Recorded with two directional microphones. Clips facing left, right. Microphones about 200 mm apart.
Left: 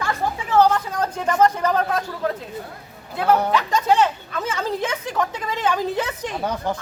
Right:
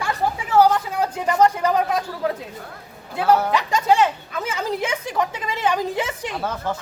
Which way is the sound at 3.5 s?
15° right (ahead or behind).